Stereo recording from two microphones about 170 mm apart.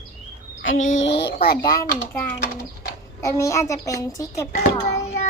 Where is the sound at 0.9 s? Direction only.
90° left; by 1.5 s 70° left (ahead or behind).